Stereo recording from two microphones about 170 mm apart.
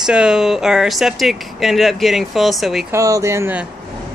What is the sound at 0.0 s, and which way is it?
Speech, 5° right (ahead or behind).